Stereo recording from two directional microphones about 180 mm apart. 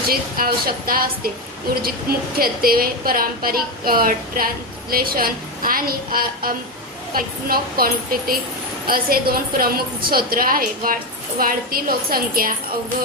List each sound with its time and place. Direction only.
0.1 s a woman's voice: 55° right (ahead or behind)